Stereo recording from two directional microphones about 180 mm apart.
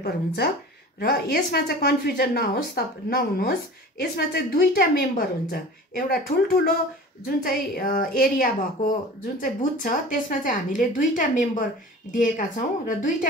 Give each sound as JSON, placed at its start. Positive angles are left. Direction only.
{"t": 0.9, "sound": "a woman's voice", "side_deg": 60}